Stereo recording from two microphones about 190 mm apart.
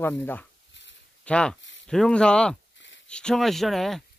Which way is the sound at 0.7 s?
70° left (ahead or behind).